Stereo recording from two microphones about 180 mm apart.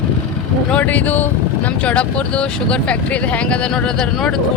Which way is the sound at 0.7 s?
10° left (ahead or behind).